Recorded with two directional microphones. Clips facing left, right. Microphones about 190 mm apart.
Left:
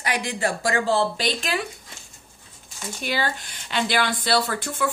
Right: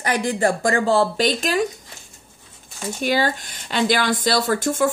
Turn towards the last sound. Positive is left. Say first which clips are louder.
# right 5 dB
turn(degrees=-45)  # may be behind; listen again after turning